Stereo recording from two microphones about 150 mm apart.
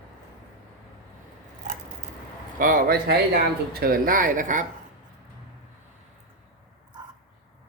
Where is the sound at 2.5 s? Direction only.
65° right (ahead or behind).